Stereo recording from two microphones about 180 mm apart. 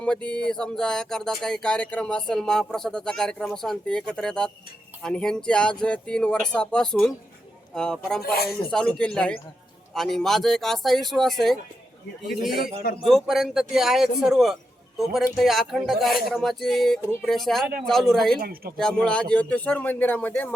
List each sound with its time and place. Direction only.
0.0 s speech: 5° left (ahead or behind)
8.2 s speech: 60° left (ahead or behind)
8.7 s speech: 5° left (ahead or behind)
18.3 s speech: 55° right (ahead or behind)
18.8 s a man's voice: 5° left (ahead or behind)